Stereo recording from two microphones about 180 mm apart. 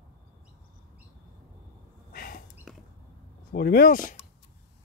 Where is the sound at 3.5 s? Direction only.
60° left (ahead or behind).